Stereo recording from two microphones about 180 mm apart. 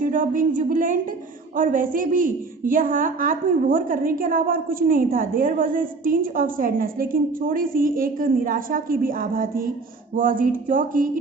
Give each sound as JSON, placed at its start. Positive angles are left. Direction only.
{"t": 0.0, "sound": "a woman's voice", "side_deg": -50}